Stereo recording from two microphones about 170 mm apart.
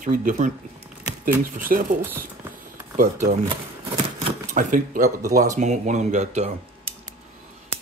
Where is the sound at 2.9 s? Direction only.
45° right (ahead or behind).